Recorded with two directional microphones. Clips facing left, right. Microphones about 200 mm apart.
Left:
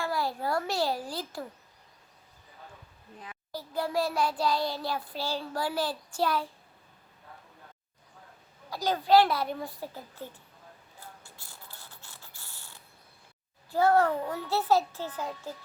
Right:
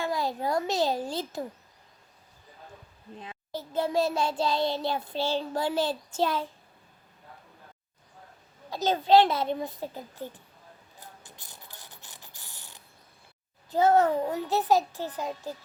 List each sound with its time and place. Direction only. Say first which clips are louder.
0.0 s a child's voice: right 2 dB; 20° right (ahead or behind)
3.2 s child singing: right 3 dB; 25° right (ahead or behind)
8.7 s child singing: right 2 dB; 25° right (ahead or behind)
11.0 s mechanisms: even; 20° right (ahead or behind)
13.7 s a child's voice: right 2 dB; 20° right (ahead or behind)